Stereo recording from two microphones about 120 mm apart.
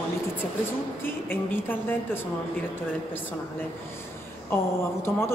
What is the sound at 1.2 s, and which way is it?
Speech, 20° left (ahead or behind).